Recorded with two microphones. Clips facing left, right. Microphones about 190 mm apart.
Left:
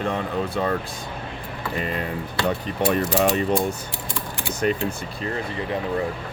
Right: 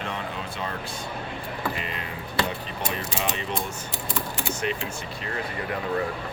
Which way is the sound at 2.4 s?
50° left (ahead or behind).